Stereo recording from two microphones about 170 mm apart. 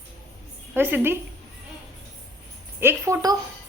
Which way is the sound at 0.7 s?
10° right (ahead or behind).